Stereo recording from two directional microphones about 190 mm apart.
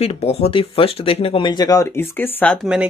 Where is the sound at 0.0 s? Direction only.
35° left (ahead or behind); by 2.7 s 5° left (ahead or behind).